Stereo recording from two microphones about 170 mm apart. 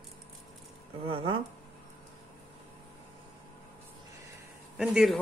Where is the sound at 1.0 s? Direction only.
30° right (ahead or behind).